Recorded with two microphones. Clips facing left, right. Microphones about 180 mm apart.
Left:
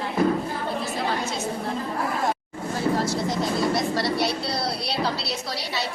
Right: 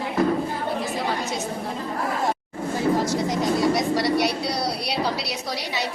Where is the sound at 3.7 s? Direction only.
15° right (ahead or behind).